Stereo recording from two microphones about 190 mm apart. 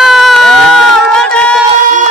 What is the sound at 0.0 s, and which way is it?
Crowd, centre (ahead or behind).